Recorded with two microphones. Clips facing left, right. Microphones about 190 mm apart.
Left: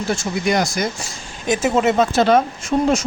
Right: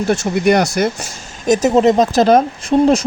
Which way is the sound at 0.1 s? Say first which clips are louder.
Right 6 dB; 65° right (ahead or behind).